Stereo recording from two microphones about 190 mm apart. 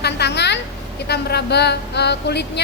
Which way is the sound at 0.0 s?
60° left (ahead or behind).